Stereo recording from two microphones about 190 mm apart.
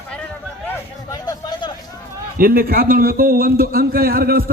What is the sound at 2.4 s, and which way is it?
A man's voice, 50° right (ahead or behind).